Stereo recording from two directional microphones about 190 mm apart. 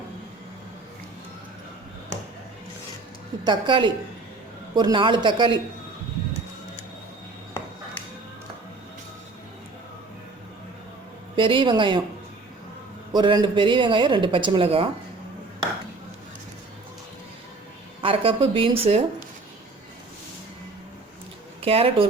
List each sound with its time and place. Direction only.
3.4 s speech: 25° right (ahead or behind)
11.3 s speech: 25° right (ahead or behind)
13.1 s speech: 25° right (ahead or behind)
18.0 s speech: 30° right (ahead or behind)
21.6 s speech: 30° right (ahead or behind)